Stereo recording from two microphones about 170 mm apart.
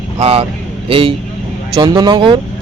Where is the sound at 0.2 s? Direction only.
35° right (ahead or behind).